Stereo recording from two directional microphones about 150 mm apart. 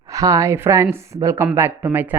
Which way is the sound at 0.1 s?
20° right (ahead or behind).